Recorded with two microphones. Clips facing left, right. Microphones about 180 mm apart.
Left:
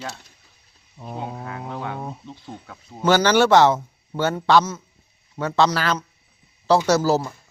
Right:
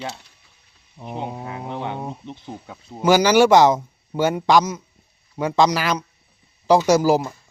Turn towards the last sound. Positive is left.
turn(degrees=-15)  # may be behind; listen again after turning